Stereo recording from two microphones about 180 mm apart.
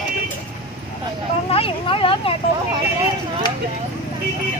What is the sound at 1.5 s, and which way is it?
Vehicle, 30° left (ahead or behind).